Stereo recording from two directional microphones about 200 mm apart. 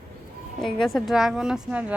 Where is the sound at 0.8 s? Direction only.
Centre (ahead or behind).